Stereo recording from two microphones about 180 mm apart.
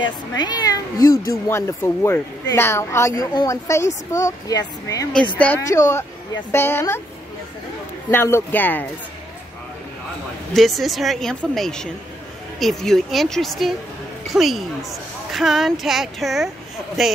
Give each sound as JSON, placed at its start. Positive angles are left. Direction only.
{"t": 0.4, "sound": "speech", "side_deg": 20}
{"t": 8.1, "sound": "speech", "side_deg": 15}
{"t": 10.5, "sound": "speech", "side_deg": 0}